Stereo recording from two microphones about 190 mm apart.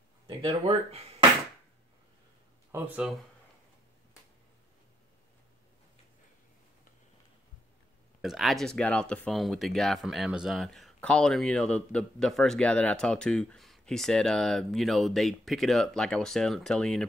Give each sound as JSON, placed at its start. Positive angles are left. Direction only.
{"t": 0.4, "sound": "speech", "side_deg": -30}
{"t": 2.7, "sound": "speech", "side_deg": -5}
{"t": 8.2, "sound": "speech", "side_deg": 0}